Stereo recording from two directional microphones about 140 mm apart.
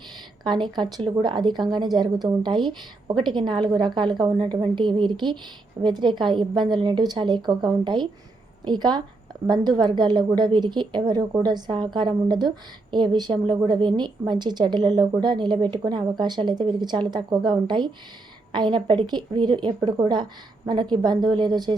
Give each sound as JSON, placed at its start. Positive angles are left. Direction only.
{"t": 0.4, "sound": "a woman's voice", "side_deg": -35}